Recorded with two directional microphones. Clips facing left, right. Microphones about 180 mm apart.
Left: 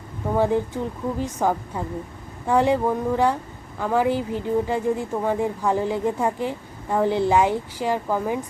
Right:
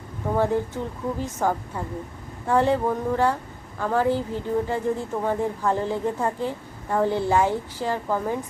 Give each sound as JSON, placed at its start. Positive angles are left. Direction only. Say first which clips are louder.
{"t": 0.3, "sound": "speech", "louder": "left 2 dB", "side_deg": 15}